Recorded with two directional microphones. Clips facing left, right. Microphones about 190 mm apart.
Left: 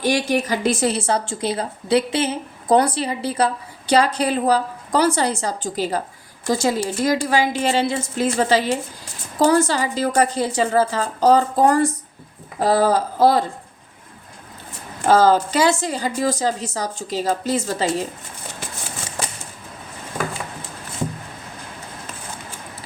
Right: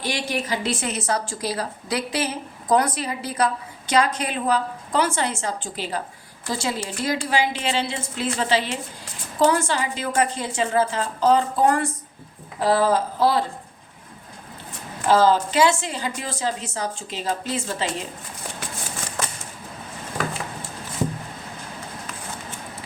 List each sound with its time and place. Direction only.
0.0 s a woman's voice: 45° left (ahead or behind)
15.0 s speech: 45° left (ahead or behind)